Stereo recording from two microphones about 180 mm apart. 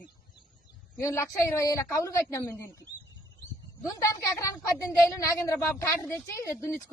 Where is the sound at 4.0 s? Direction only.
15° left (ahead or behind).